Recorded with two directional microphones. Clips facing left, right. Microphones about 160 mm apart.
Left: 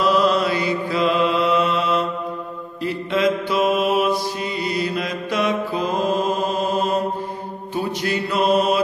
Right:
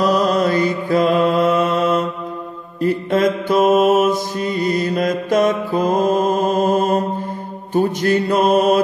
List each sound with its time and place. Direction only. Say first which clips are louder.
0.0 s mantra: right 2 dB; 45° right (ahead or behind)
7.7 s music: right 7 dB; 45° right (ahead or behind)